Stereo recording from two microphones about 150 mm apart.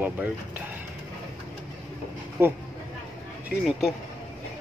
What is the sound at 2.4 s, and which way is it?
Speech, 15° right (ahead or behind).